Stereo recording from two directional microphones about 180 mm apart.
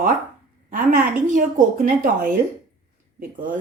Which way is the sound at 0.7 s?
50° right (ahead or behind).